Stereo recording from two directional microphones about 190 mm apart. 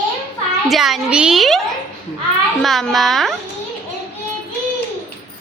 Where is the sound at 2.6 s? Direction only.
Centre (ahead or behind).